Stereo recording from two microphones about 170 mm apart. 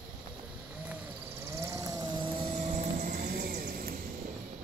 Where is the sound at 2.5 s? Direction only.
40° right (ahead or behind); by 3.9 s 65° right (ahead or behind).